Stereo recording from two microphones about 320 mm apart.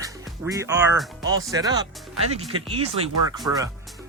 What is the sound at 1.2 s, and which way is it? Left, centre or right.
Speech, right.